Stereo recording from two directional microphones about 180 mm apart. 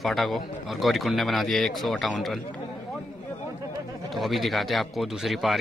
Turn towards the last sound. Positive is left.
turn(degrees=0)  # may be behind; listen again after turning